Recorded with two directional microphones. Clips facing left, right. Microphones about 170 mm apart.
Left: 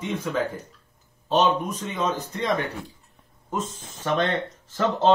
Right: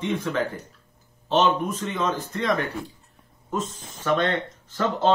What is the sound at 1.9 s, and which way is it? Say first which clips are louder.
Speech: left 1 dB; 20° left (ahead or behind).